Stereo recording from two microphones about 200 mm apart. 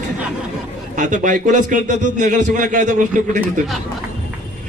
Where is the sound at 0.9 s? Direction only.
40° right (ahead or behind).